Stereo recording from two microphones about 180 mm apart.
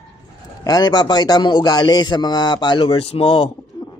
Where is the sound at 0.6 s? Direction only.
20° left (ahead or behind).